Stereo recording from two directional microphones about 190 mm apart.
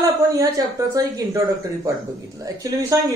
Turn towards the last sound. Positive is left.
turn(degrees=-15)  # may be behind; listen again after turning